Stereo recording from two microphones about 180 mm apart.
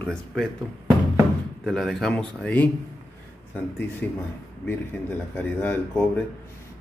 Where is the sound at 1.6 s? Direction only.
Centre (ahead or behind).